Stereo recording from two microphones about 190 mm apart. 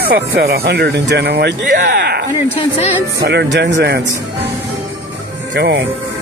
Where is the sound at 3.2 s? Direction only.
60° right (ahead or behind).